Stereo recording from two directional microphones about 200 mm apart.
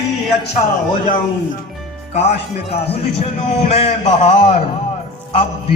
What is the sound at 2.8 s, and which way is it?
A man's voice, 30° left (ahead or behind).